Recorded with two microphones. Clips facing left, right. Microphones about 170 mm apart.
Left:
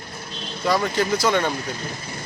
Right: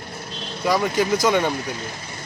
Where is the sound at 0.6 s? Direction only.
10° right (ahead or behind).